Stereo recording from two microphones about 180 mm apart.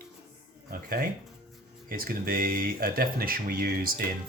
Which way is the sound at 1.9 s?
55° right (ahead or behind).